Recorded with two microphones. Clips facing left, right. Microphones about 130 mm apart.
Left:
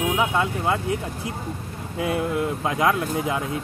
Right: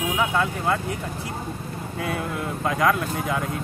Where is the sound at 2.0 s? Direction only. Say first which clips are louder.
Left 5 dB; 15° left (ahead or behind).